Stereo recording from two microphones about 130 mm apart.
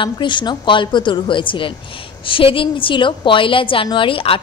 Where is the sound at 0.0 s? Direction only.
40° left (ahead or behind).